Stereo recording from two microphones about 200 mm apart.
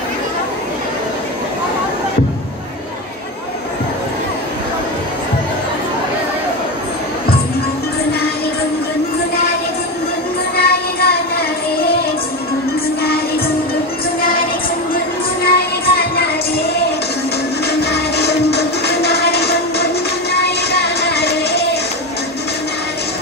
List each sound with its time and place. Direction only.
10.5 s music: 50° left (ahead or behind)
14.2 s music: 45° left (ahead or behind)